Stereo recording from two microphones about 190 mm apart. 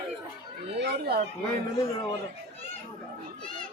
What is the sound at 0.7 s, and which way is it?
Speech, 60° right (ahead or behind).